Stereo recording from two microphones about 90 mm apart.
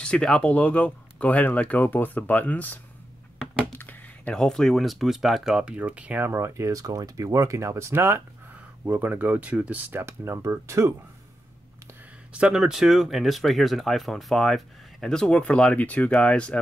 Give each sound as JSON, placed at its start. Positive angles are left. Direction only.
{"t": 0.0, "sound": "speech", "side_deg": 10}
{"t": 3.7, "sound": "a sound", "side_deg": 20}
{"t": 4.3, "sound": "speech", "side_deg": 5}
{"t": 6.2, "sound": "speech", "side_deg": -30}
{"t": 8.8, "sound": "speech", "side_deg": -20}
{"t": 9.9, "sound": "speech", "side_deg": -30}
{"t": 12.3, "sound": "speech", "side_deg": -10}